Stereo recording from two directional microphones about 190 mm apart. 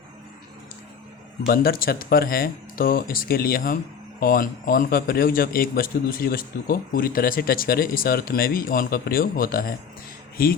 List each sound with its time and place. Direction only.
1.5 s a man's voice: 50° left (ahead or behind)